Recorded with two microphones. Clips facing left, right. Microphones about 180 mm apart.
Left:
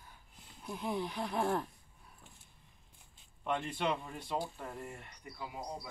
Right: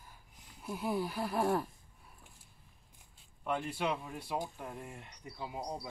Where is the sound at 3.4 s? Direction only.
5° right (ahead or behind).